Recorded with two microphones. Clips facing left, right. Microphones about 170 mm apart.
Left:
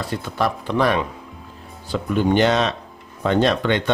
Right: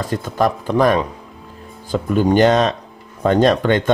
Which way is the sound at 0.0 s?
45° right (ahead or behind).